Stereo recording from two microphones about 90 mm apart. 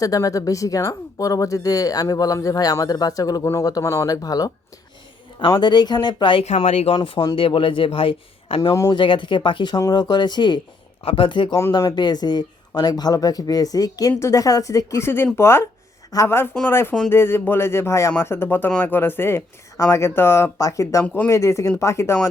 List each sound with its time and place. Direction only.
0.0 s speech: 40° left (ahead or behind)
5.5 s speech: 55° left (ahead or behind); by 8.7 s 85° left
8.9 s speech: 65° left (ahead or behind)
11.0 s speech: 85° left; by 11.5 s 65° left (ahead or behind)
11.9 s speech: 50° left (ahead or behind)
21.0 s speech: 15° left (ahead or behind)
21.2 s speech: 35° left (ahead or behind)